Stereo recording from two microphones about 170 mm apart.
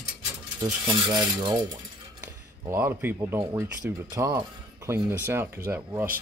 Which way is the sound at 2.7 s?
15° right (ahead or behind).